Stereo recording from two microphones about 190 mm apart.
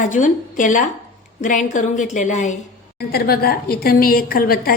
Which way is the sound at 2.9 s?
55° left (ahead or behind).